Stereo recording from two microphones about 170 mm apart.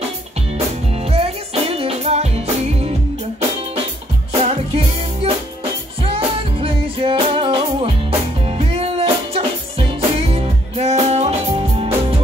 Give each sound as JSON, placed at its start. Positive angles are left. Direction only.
{"t": 1.1, "sound": "music", "side_deg": -35}
{"t": 4.3, "sound": "music", "side_deg": -35}